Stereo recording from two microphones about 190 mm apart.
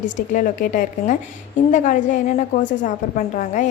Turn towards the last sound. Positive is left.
turn(degrees=40)  # may be behind; listen again after turning